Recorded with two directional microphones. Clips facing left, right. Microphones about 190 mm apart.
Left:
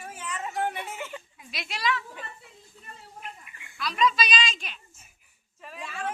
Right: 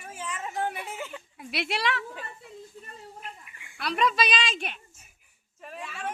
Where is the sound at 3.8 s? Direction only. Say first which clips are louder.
Even; 60° right (ahead or behind).